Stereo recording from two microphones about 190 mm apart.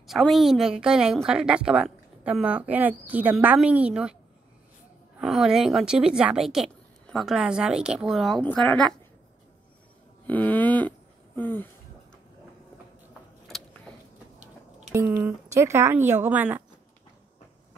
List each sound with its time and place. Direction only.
0.0 s a woman's voice: centre (ahead or behind)
5.2 s a woman's voice: centre (ahead or behind)
10.2 s a sound: 10° left (ahead or behind)
14.9 s speech: 10° right (ahead or behind)